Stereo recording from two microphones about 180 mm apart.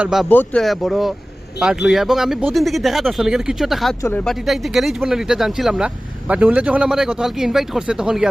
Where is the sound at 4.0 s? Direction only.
10° left (ahead or behind).